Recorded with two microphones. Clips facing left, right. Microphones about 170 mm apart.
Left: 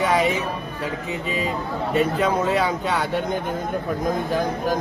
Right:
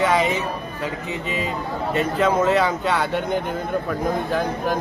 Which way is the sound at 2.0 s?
10° left (ahead or behind).